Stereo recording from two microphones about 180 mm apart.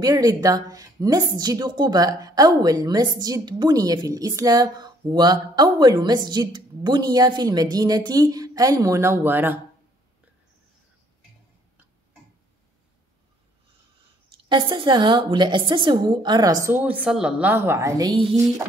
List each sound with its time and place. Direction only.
0.0 s a woman's voice: 20° right (ahead or behind)
14.5 s a woman's voice: 25° right (ahead or behind)